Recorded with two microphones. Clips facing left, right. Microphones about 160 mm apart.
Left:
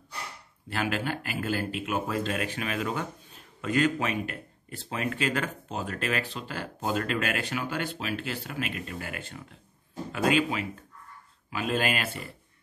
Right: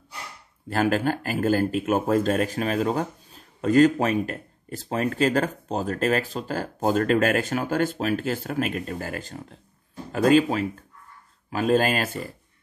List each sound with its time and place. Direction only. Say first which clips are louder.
0.7 s speech: right 8 dB; 40° right (ahead or behind)